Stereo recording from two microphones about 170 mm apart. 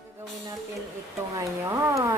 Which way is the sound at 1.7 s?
20° right (ahead or behind).